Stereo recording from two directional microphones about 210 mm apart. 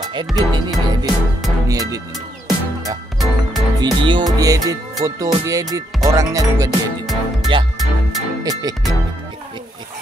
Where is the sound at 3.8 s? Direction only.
20° right (ahead or behind).